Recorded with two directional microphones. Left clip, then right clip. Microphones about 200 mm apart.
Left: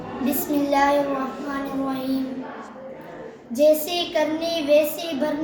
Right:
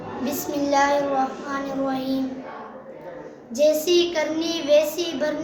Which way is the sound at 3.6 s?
30° right (ahead or behind).